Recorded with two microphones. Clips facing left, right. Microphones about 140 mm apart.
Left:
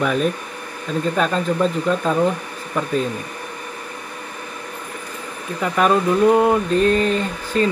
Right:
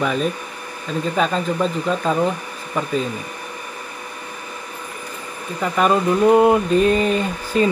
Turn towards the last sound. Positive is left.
turn(degrees=-5)  # may be behind; listen again after turning